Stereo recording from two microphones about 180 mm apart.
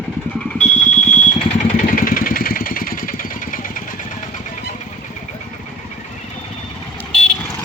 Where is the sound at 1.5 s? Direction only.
40° left (ahead or behind).